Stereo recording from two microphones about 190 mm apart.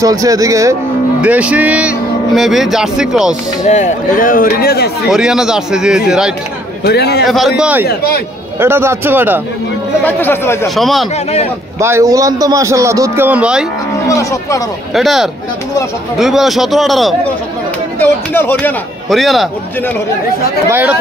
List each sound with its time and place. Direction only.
0.0 s a man's voice: 20° right (ahead or behind)
3.6 s speech: 40° left (ahead or behind); by 4.9 s 55° left (ahead or behind)
5.1 s speech: 5° right (ahead or behind)
6.8 s a man's voice: 55° left (ahead or behind)
7.2 s a man's voice: centre (ahead or behind)
10.0 s speech: 10° left (ahead or behind)
10.8 s speech: centre (ahead or behind)
11.8 s a man's voice: 15° right (ahead or behind)
14.0 s speech: 15° left (ahead or behind)
15.0 s speech: centre (ahead or behind)
17.9 s speech: 10° left (ahead or behind)
19.0 s speech: centre (ahead or behind)
20.6 s a man's voice: 10° right (ahead or behind)